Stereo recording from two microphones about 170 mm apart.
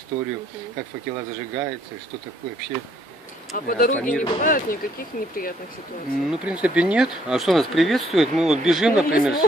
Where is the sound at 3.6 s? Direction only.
55° left (ahead or behind).